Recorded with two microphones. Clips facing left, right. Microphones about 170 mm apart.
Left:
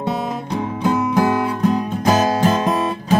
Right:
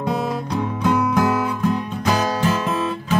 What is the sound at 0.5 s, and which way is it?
Music, 30° left (ahead or behind).